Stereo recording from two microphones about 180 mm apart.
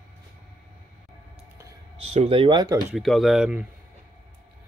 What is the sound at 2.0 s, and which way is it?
Speech, 30° right (ahead or behind).